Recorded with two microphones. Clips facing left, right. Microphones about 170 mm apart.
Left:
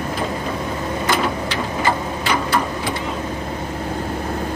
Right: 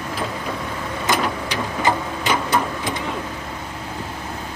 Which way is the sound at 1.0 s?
15° right (ahead or behind).